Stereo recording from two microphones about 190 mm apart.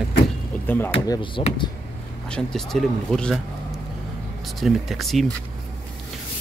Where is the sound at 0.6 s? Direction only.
10° left (ahead or behind).